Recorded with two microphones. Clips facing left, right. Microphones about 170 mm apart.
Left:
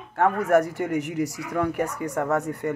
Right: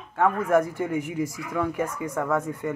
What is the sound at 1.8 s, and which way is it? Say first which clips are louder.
Speech: left 1 dB; 40° left (ahead or behind).